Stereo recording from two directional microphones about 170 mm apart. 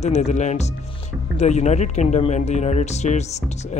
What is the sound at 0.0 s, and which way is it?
Speech, 40° left (ahead or behind).